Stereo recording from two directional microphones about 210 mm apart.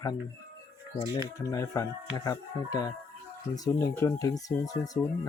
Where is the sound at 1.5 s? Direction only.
15° left (ahead or behind).